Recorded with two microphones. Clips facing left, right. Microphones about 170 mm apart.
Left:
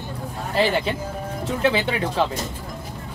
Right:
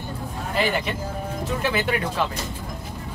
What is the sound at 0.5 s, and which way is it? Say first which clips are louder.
Speech: left 3 dB; 30° left (ahead or behind).